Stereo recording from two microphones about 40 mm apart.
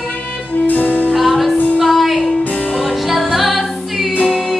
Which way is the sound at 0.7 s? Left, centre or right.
Left.